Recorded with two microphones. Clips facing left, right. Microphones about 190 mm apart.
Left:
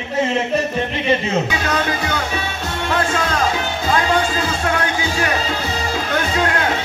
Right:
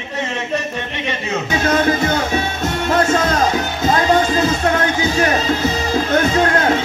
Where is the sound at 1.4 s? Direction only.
45° right (ahead or behind).